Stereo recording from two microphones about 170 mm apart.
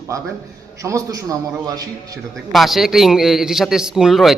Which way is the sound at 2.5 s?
Centre (ahead or behind).